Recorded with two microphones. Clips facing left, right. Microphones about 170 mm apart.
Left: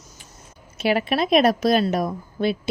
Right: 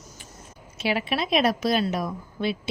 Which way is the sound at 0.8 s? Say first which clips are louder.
Left 5 dB; 45° left (ahead or behind).